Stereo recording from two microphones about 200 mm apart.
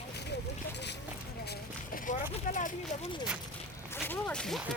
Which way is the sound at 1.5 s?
45° left (ahead or behind).